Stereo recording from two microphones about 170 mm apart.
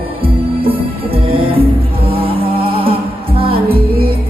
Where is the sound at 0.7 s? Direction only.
30° right (ahead or behind).